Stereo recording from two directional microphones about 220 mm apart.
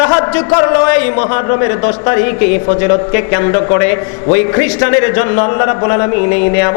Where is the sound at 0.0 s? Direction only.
20° left (ahead or behind).